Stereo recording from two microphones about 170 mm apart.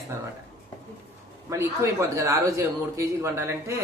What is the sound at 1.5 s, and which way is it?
A man's voice, 15° right (ahead or behind).